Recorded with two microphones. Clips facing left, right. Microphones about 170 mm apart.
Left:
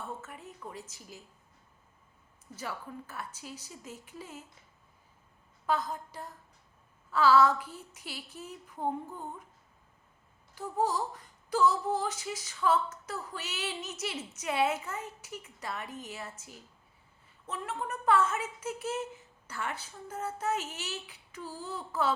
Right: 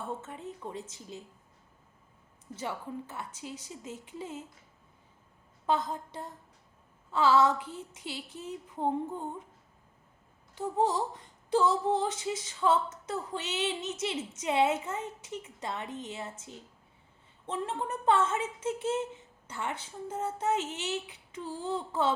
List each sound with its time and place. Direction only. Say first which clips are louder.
0.1 s female singing: right 4 dB; 25° right (ahead or behind)
2.6 s female singing: right 3 dB; 20° right (ahead or behind)
5.6 s female singing: right 2 dB; 25° right (ahead or behind)
10.5 s female singing: right 2 dB; 25° right (ahead or behind)